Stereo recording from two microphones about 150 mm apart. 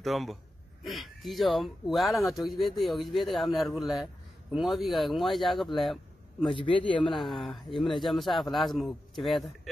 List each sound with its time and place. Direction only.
0.0 s a man's voice: centre (ahead or behind)
6.4 s a man's voice: 35° left (ahead or behind)
7.1 s a man's voice: centre (ahead or behind)